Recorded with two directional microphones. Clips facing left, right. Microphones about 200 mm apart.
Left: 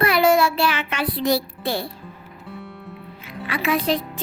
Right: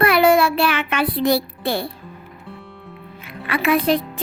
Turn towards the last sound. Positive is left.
turn(degrees=-55)  # may be behind; listen again after turning